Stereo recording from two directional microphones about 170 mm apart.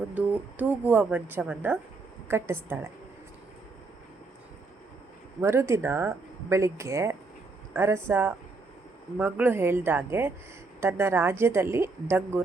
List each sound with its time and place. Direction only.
0.1 s speech: 10° right (ahead or behind)
5.4 s speech: 15° right (ahead or behind)